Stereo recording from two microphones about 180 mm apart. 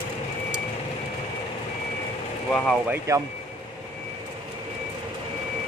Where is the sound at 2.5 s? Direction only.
5° left (ahead or behind).